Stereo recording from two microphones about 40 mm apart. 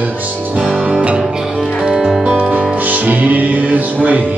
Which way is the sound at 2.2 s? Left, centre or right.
Right.